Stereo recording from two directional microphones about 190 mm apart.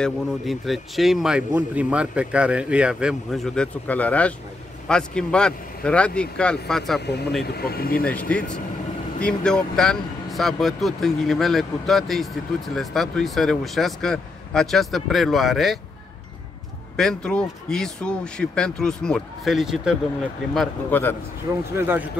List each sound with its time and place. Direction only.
0.0 s a man's voice: centre (ahead or behind)
7.4 s speech: 55° left (ahead or behind)
8.0 s a man's voice: 5° left (ahead or behind)
16.9 s a man's voice: 5° left (ahead or behind)
20.5 s a man's voice: 10° left (ahead or behind)
21.7 s a man's voice: 10° right (ahead or behind)